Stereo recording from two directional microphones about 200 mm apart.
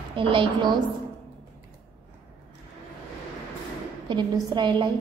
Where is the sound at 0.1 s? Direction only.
25° right (ahead or behind).